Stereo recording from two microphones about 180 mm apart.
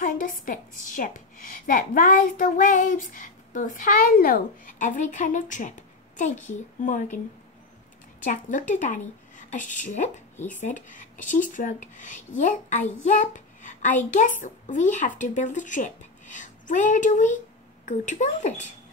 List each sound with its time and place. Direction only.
0.0 s a woman's voice: 50° left (ahead or behind)
8.2 s a woman's voice: 45° left (ahead or behind)
10.3 s speech: 10° left (ahead or behind)
10.6 s a woman's voice: 45° left (ahead or behind)